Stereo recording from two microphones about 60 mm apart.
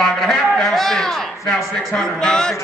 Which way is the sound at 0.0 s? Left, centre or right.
Centre.